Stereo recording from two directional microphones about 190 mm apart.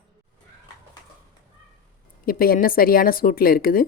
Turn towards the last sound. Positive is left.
turn(degrees=50)  # may be behind; listen again after turning